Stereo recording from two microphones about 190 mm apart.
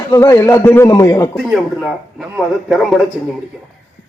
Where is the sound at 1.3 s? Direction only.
Centre (ahead or behind).